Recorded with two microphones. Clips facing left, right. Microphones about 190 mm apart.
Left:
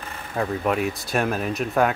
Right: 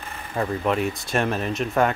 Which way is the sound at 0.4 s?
5° left (ahead or behind).